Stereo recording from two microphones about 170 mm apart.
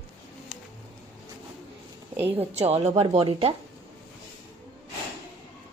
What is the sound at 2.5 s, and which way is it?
A woman's voice, 40° right (ahead or behind).